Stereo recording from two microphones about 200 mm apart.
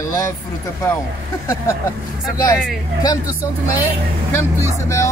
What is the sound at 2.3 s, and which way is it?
Speech, 15° left (ahead or behind).